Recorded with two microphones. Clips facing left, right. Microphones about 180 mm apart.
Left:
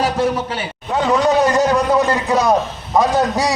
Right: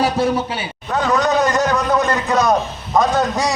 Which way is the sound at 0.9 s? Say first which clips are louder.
Left 2 dB; 25° left (ahead or behind).